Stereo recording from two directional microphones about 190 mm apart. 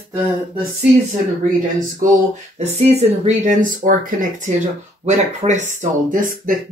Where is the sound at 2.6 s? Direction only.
35° right (ahead or behind).